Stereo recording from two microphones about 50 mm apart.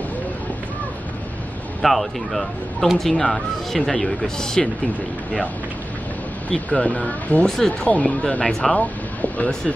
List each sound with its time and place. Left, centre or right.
1.8 s speech: centre
6.5 s speech: left
7.4 s speech: centre
7.9 s speech: left
8.5 s speech: centre
8.7 s speech: left